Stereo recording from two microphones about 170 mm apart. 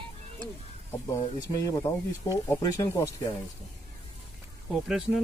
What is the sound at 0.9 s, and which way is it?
Speech, 20° left (ahead or behind).